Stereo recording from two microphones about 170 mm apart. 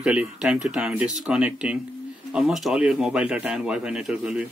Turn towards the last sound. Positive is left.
turn(degrees=-5)  # may be behind; listen again after turning